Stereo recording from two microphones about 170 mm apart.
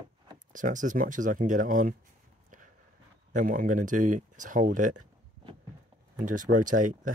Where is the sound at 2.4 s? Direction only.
50° right (ahead or behind).